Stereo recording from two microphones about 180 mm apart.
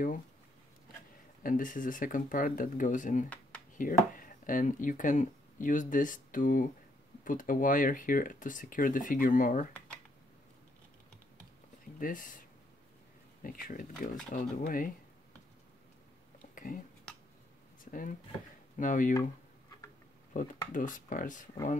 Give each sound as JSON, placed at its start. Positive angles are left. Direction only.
{"t": 1.4, "sound": "speech", "side_deg": 50}
{"t": 12.0, "sound": "speech", "side_deg": 50}
{"t": 13.4, "sound": "speech", "side_deg": 50}
{"t": 16.5, "sound": "a sound", "side_deg": 50}
{"t": 18.8, "sound": "speech", "side_deg": 45}
{"t": 20.3, "sound": "speech", "side_deg": 45}